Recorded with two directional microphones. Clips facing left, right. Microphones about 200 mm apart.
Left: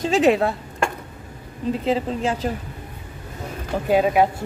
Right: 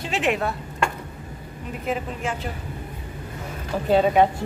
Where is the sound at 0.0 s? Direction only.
40° left (ahead or behind).